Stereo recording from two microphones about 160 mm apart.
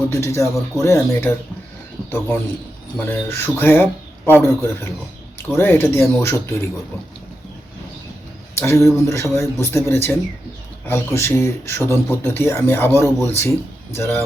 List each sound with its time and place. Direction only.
0.1 s speech: 15° left (ahead or behind)
3.0 s speech: 10° left (ahead or behind)
8.5 s speech: 15° left (ahead or behind)